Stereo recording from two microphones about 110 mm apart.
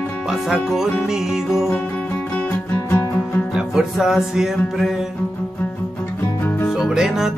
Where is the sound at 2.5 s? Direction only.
15° left (ahead or behind).